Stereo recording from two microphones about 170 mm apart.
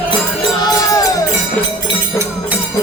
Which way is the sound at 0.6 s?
20° left (ahead or behind).